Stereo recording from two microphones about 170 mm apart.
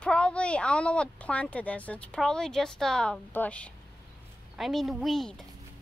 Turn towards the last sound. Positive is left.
turn(degrees=0)  # may be behind; listen again after turning